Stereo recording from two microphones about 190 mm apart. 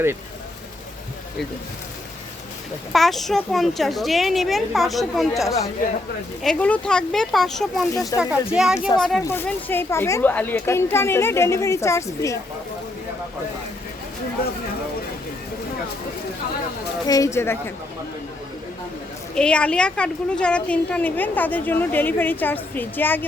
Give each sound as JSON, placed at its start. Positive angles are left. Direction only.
{"t": 2.9, "sound": "a woman's voice", "side_deg": 0}
{"t": 6.4, "sound": "a woman's voice", "side_deg": 5}
{"t": 17.1, "sound": "a woman's voice", "side_deg": 15}
{"t": 19.4, "sound": "a woman's voice", "side_deg": 5}